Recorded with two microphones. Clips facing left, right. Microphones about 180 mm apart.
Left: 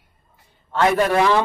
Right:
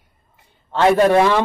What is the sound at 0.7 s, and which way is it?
Speech, 30° right (ahead or behind).